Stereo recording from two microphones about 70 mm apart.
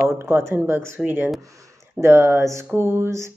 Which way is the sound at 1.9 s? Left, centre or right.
Right.